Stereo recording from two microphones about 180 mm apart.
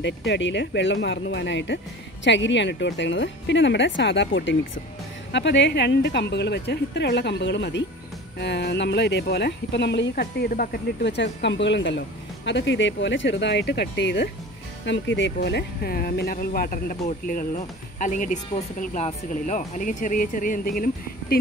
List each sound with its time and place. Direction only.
0.0 s speech: 80° left; by 21.4 s 55° left (ahead or behind)